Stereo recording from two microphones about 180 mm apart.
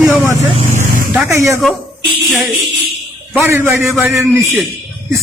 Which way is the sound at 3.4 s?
15° right (ahead or behind).